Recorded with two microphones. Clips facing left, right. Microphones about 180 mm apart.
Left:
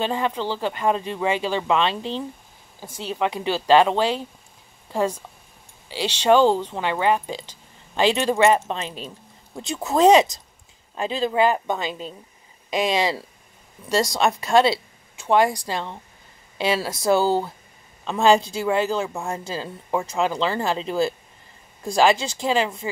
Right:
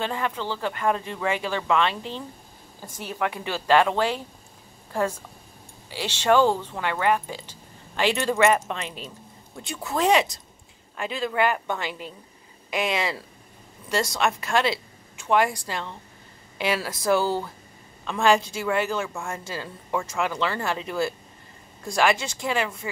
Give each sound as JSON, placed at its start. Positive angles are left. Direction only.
{"t": 0.0, "sound": "speech", "side_deg": 20}
{"t": 5.9, "sound": "speech", "side_deg": 20}
{"t": 13.8, "sound": "a woman's voice", "side_deg": 35}